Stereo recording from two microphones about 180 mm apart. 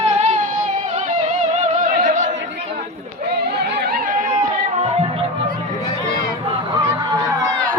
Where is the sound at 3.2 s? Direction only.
65° right (ahead or behind).